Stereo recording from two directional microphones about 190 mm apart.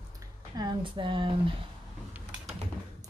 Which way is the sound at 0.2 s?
20° right (ahead or behind).